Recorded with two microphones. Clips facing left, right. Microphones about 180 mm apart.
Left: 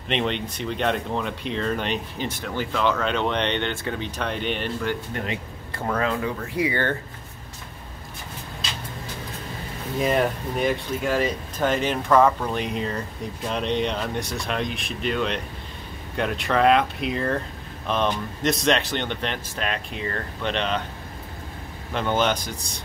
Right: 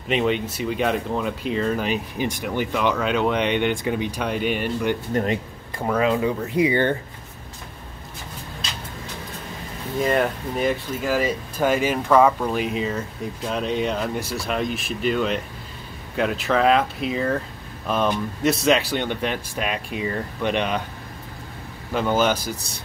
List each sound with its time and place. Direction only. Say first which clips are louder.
0.1 s speech: right 4 dB; 5° right (ahead or behind)
5.1 s speech: right 7 dB; 45° right (ahead or behind)
5.8 s speech: right 4 dB; 15° right (ahead or behind)
10.0 s speech: right 1 dB; centre (ahead or behind)
21.9 s speech: right 2 dB; 5° right (ahead or behind)